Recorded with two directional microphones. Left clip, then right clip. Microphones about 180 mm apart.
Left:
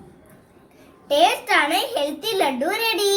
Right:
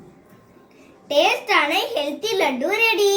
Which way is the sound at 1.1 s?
25° left (ahead or behind).